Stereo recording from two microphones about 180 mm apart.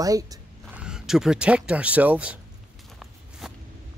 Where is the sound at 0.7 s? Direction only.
5° right (ahead or behind).